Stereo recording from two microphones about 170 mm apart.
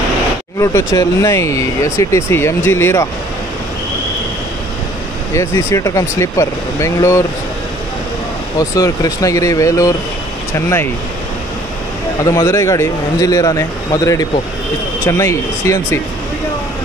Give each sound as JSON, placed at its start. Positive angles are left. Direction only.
{"t": 0.6, "sound": "speech", "side_deg": 20}
{"t": 5.3, "sound": "speech", "side_deg": 15}
{"t": 8.5, "sound": "speech", "side_deg": 20}
{"t": 12.3, "sound": "speech", "side_deg": 15}